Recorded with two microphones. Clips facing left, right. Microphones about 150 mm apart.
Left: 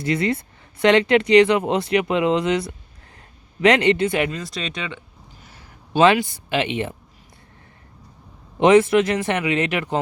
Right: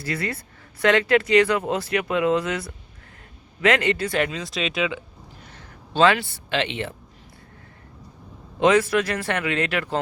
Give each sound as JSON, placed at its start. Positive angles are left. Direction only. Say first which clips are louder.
{"t": 0.0, "sound": "speech", "louder": "left 7 dB", "side_deg": 25}
{"t": 4.3, "sound": "speech", "louder": "right 1 dB", "side_deg": 0}
{"t": 5.4, "sound": "a sound", "louder": "right 2 dB", "side_deg": 10}
{"t": 8.5, "sound": "speech", "louder": "left 5 dB", "side_deg": 25}